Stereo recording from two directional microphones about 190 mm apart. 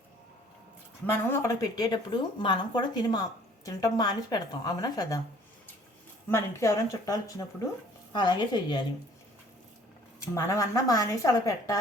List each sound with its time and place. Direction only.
1.0 s speech: 15° left (ahead or behind)
6.3 s speech: 15° left (ahead or behind)
10.3 s speech: 15° left (ahead or behind)